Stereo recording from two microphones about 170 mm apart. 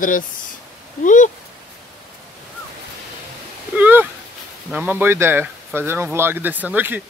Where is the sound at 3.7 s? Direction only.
10° right (ahead or behind).